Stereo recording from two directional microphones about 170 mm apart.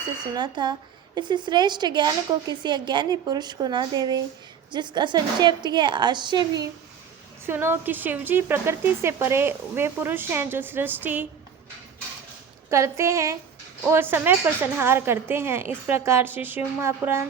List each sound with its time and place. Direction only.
0.3 s a woman's voice: 25° right (ahead or behind)
7.4 s a woman's voice: 15° right (ahead or behind)
12.7 s a woman's voice: 15° right (ahead or behind)